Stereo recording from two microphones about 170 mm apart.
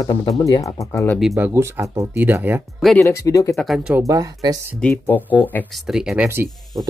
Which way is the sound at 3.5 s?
Centre (ahead or behind).